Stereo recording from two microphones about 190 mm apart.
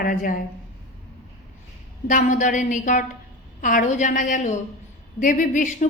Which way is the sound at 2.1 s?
40° left (ahead or behind).